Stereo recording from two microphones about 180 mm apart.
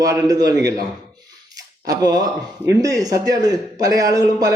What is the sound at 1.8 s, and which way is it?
A man's voice, 20° right (ahead or behind).